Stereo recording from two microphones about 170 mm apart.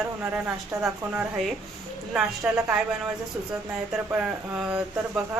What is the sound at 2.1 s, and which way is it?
Speech, 5° right (ahead or behind).